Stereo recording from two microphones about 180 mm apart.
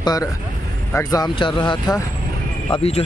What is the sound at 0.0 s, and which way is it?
Speech, 20° left (ahead or behind).